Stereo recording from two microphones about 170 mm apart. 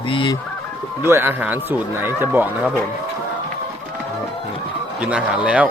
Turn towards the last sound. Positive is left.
turn(degrees=-5)  # may be behind; listen again after turning